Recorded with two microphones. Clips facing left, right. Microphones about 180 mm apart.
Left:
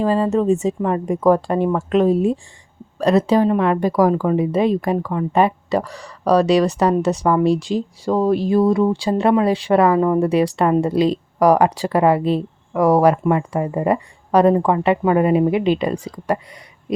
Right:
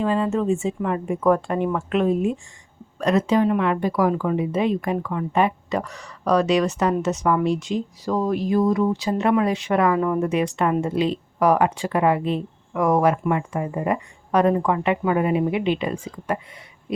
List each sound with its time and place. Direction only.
0.0 s speech: 40° left (ahead or behind)